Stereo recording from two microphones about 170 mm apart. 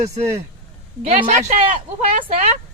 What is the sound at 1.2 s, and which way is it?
Speech, 45° right (ahead or behind).